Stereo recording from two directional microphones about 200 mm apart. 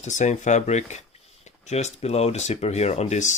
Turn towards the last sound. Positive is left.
turn(degrees=35)  # may be behind; listen again after turning